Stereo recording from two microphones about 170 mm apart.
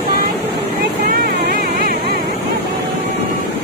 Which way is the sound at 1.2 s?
65° right (ahead or behind).